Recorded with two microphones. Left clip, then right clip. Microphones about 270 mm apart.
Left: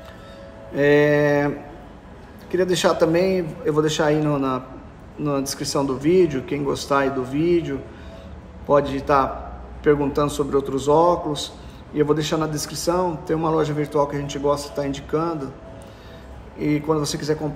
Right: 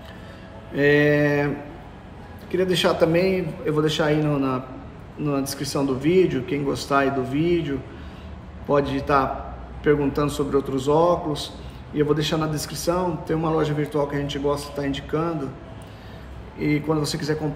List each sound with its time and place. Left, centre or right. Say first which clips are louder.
0.7 s a man's voice: left 2 dB; centre
2.5 s a man's voice: left 2 dB; centre
16.5 s a man's voice: left 2 dB; centre